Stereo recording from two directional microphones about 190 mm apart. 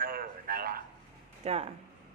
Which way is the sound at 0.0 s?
50° right (ahead or behind).